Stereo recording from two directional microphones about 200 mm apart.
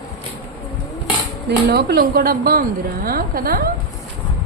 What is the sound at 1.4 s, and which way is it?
Speech, 50° right (ahead or behind).